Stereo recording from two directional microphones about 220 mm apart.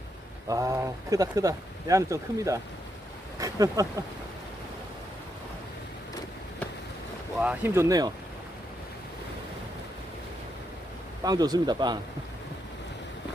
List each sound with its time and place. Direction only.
0.4 s speech: 15° right (ahead or behind)
7.3 s speech: 10° right (ahead or behind)
11.2 s speech: 20° right (ahead or behind)